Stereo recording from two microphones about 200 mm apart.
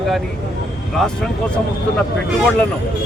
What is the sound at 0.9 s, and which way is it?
Speech, 5° left (ahead or behind).